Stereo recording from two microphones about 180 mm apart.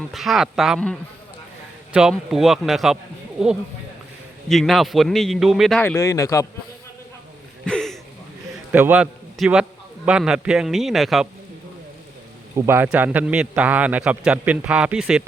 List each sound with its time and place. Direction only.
0.1 s a man's voice: centre (ahead or behind)
5.8 s speech: 15° left (ahead or behind)
7.6 s a sound: 5° left (ahead or behind)
8.7 s a man's voice: 10° right (ahead or behind)
12.5 s a man's voice: 10° right (ahead or behind)